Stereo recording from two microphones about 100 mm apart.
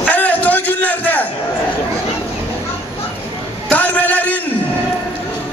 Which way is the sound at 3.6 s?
15° left (ahead or behind).